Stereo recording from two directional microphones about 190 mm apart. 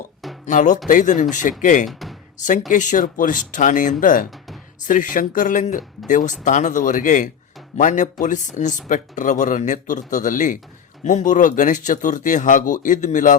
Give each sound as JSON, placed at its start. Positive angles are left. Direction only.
{"t": 0.4, "sound": "speech", "side_deg": 40}
{"t": 1.9, "sound": "speech", "side_deg": 0}
{"t": 2.4, "sound": "speech", "side_deg": 40}